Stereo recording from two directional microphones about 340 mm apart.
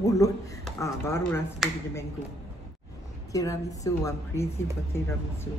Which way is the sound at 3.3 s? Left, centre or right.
Centre.